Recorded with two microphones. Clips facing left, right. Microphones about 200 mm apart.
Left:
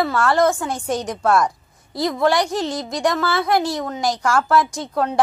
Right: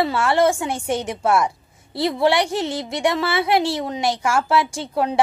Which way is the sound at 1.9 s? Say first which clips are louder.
Even; 25° right (ahead or behind).